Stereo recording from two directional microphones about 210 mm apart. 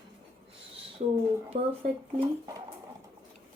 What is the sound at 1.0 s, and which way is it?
Speech, 35° right (ahead or behind).